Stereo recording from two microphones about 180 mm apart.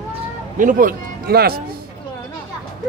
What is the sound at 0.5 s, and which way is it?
Speech, 50° right (ahead or behind).